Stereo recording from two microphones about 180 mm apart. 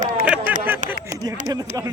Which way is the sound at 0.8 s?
45° right (ahead or behind).